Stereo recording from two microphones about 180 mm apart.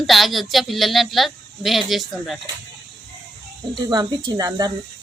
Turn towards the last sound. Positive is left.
turn(degrees=-20)  # may be behind; listen again after turning